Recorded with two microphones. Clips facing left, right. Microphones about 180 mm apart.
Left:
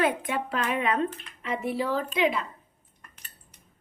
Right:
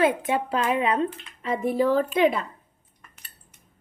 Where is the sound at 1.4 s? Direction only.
40° right (ahead or behind).